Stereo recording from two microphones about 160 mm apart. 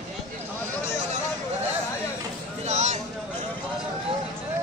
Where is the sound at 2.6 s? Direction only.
45° right (ahead or behind).